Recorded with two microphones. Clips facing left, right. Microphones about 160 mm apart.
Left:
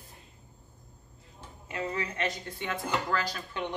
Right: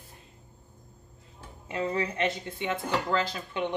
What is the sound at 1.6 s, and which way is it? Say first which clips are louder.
A woman's voice: right 4 dB; 25° right (ahead or behind).